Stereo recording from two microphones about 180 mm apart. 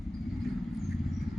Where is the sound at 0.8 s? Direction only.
Centre (ahead or behind).